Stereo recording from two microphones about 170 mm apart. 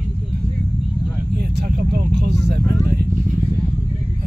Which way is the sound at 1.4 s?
75° right (ahead or behind).